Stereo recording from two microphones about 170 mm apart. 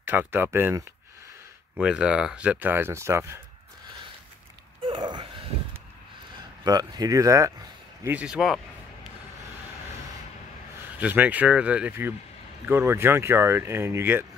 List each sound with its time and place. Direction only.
0.0 s speech: 10° right (ahead or behind)
4.8 s a sound: 30° right (ahead or behind)
6.6 s speech: 20° right (ahead or behind); by 8.5 s 5° right (ahead or behind)
11.0 s speech: 10° right (ahead or behind)